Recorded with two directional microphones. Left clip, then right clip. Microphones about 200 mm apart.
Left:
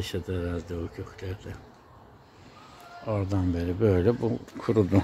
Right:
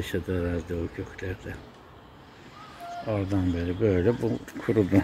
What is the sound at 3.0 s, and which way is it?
Speech, 10° left (ahead or behind).